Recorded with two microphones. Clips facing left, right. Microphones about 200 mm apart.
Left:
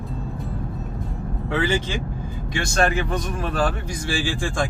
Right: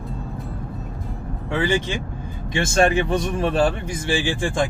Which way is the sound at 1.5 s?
15° right (ahead or behind).